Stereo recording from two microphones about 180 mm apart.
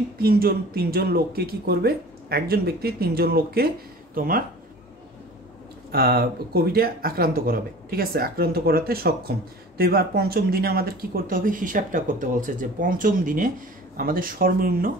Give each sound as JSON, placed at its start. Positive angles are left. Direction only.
{"t": 0.2, "sound": "speech", "side_deg": -60}
{"t": 5.9, "sound": "speech", "side_deg": -60}